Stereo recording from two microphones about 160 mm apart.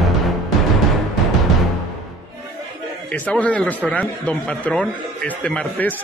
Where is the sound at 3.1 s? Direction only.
10° left (ahead or behind).